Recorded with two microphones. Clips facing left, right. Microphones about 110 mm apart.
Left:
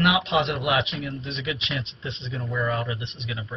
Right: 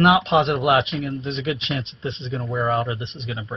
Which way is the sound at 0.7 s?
45° right (ahead or behind).